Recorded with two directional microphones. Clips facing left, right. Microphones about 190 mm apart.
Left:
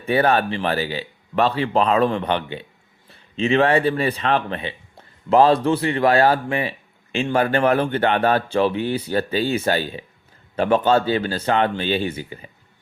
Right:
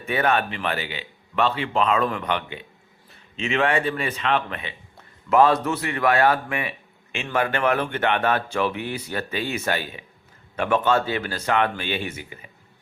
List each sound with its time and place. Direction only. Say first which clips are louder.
0.0 s speech: left 4 dB; 35° left (ahead or behind)